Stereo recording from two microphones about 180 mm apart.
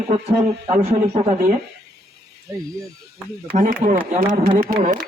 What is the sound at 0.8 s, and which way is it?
Speech, 35° right (ahead or behind).